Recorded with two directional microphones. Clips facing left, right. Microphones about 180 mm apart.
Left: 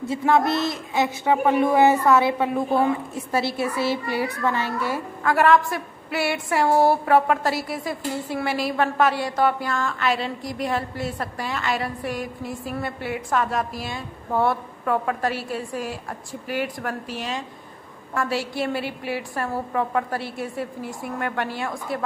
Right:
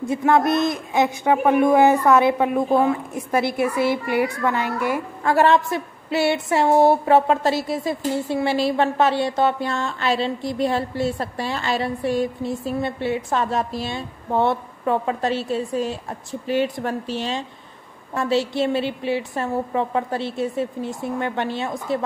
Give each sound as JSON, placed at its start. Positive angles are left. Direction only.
{"t": 0.1, "sound": "a man's voice", "side_deg": -15}
{"t": 5.2, "sound": "speech", "side_deg": -25}